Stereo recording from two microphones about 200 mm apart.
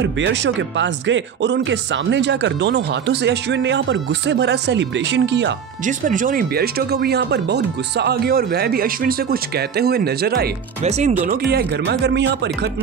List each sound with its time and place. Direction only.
0.0 s speech: 60° right (ahead or behind)
5.9 s speech: 40° right (ahead or behind)
10.8 s speech: 35° right (ahead or behind)
11.5 s speech: 55° right (ahead or behind)